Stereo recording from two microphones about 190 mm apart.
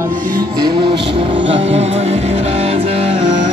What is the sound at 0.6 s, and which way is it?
Music, 25° right (ahead or behind).